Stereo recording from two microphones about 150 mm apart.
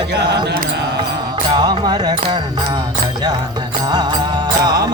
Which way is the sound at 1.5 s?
30° right (ahead or behind).